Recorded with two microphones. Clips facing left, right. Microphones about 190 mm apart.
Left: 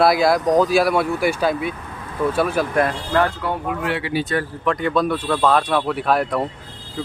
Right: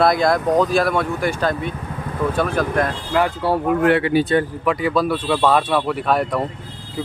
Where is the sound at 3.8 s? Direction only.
55° right (ahead or behind).